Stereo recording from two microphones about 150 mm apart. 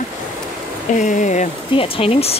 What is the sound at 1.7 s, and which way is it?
Speech, 35° left (ahead or behind).